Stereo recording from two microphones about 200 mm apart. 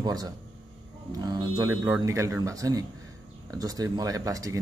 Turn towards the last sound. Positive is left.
turn(degrees=-15)  # may be behind; listen again after turning